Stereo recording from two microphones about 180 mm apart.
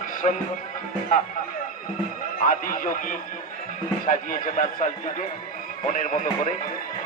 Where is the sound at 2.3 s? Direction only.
50° left (ahead or behind).